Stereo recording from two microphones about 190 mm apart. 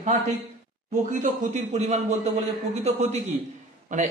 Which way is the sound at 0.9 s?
40° right (ahead or behind).